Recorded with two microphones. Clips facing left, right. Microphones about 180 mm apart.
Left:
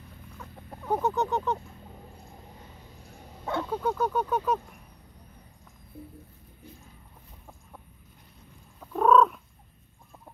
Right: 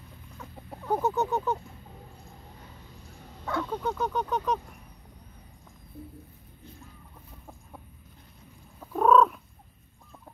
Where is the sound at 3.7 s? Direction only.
5° left (ahead or behind).